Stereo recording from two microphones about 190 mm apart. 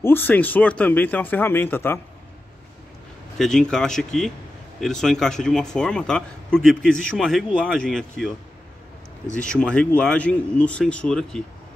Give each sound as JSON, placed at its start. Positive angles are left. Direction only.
{"t": 0.0, "sound": "speech", "side_deg": 10}
{"t": 3.3, "sound": "speech", "side_deg": 5}
{"t": 9.3, "sound": "speech", "side_deg": 5}